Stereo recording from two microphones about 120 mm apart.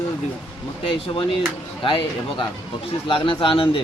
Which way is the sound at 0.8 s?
45° left (ahead or behind).